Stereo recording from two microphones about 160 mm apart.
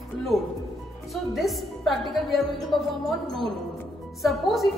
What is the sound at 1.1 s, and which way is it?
A woman's voice, centre (ahead or behind).